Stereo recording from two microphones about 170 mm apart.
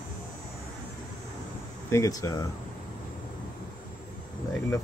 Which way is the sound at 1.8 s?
20° left (ahead or behind).